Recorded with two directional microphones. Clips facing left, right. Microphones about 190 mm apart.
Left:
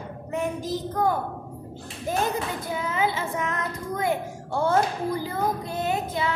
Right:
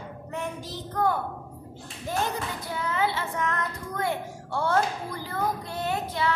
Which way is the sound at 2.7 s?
15° left (ahead or behind).